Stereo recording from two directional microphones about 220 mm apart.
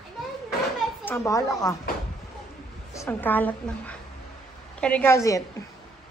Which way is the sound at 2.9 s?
10° left (ahead or behind).